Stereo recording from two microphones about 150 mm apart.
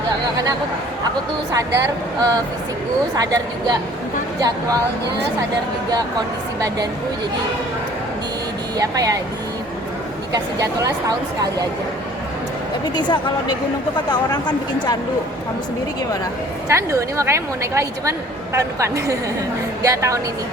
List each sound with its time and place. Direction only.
1.5 s a woman's voice: 20° right (ahead or behind)
8.8 s a woman's voice: 25° right (ahead or behind)
10.3 s a woman's voice: 25° right (ahead or behind)
13.0 s speech: 30° left (ahead or behind)
16.6 s a woman's voice: 20° right (ahead or behind)